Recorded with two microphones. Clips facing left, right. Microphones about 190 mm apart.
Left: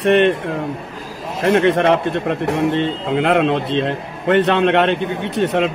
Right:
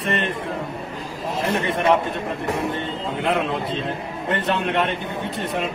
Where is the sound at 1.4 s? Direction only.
90° left.